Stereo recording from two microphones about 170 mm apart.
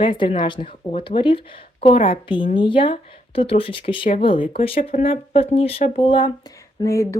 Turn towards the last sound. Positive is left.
turn(degrees=20)  # may be behind; listen again after turning